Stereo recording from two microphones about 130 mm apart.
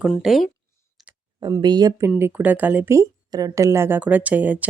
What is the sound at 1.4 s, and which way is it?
Speech, 35° right (ahead or behind).